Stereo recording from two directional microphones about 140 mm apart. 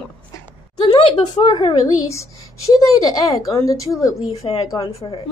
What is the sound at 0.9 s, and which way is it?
Speech, 40° left (ahead or behind).